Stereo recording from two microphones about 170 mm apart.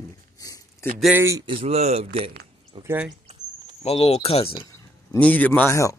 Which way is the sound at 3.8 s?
35° left (ahead or behind).